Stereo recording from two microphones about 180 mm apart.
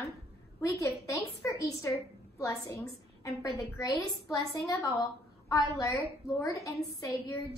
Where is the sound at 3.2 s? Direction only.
20° left (ahead or behind).